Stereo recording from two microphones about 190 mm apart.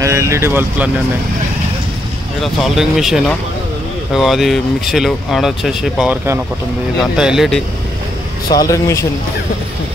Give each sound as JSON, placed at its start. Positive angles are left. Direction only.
{"t": 0.0, "sound": "speech", "side_deg": -15}
{"t": 2.4, "sound": "speech", "side_deg": 0}
{"t": 7.2, "sound": "speech", "side_deg": -5}
{"t": 8.5, "sound": "speech", "side_deg": 20}